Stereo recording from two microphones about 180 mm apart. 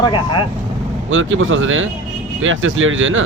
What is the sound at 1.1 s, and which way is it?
Speech, 90° right.